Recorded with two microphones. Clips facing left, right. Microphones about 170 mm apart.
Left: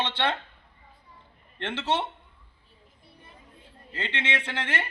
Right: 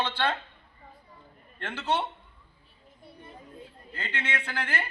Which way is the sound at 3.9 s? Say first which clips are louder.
Left 3 dB; 20° left (ahead or behind).